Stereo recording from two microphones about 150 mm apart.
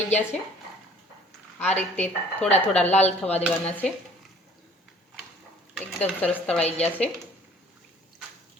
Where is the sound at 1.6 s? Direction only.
50° left (ahead or behind).